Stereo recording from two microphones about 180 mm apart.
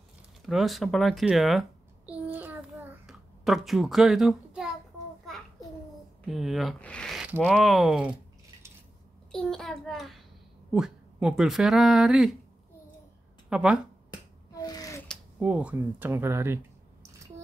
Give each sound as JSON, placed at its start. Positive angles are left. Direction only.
{"t": 0.5, "sound": "babbling", "side_deg": 0}
{"t": 3.1, "sound": "a child's voice", "side_deg": 0}
{"t": 6.2, "sound": "speech", "side_deg": 0}
{"t": 9.3, "sound": "a sound", "side_deg": 0}
{"t": 10.7, "sound": "speech", "side_deg": -5}
{"t": 13.5, "sound": "speech", "side_deg": -5}
{"t": 14.5, "sound": "a sound", "side_deg": 20}
{"t": 15.0, "sound": "speech", "side_deg": -5}